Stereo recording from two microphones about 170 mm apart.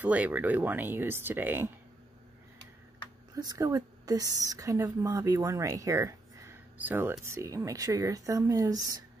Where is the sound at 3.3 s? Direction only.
20° right (ahead or behind).